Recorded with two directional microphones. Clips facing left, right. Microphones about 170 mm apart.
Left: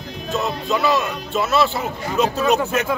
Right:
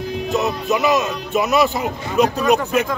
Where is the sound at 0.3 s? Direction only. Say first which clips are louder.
Right 2 dB; 20° right (ahead or behind).